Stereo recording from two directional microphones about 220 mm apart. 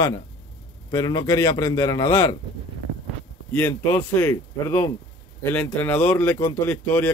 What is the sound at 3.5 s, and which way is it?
A man's voice, 10° left (ahead or behind).